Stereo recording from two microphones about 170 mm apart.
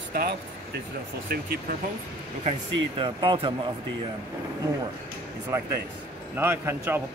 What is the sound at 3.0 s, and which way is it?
Speech, 25° right (ahead or behind).